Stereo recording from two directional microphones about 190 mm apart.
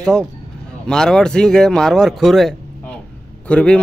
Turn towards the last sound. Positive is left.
turn(degrees=5)  # may be behind; listen again after turning